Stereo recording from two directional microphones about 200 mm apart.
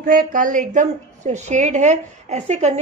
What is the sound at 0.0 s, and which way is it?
A woman's voice, 45° right (ahead or behind).